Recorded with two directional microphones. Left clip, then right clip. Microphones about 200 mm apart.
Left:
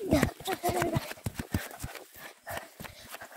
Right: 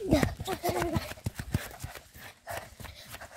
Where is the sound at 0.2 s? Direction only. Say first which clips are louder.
Left 1 dB; 50° left (ahead or behind).